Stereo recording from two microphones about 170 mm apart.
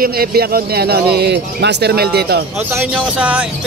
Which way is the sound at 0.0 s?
65° right (ahead or behind).